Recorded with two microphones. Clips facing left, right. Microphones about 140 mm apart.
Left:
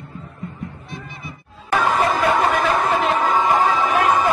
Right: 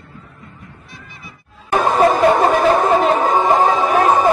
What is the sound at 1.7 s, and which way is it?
Music, 35° right (ahead or behind).